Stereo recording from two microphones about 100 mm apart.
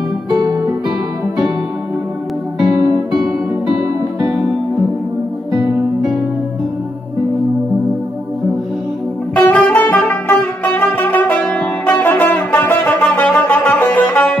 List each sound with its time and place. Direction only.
0.3 s music: 40° right (ahead or behind)
4.2 s music: 5° right (ahead or behind)
9.3 s music: 15° left (ahead or behind)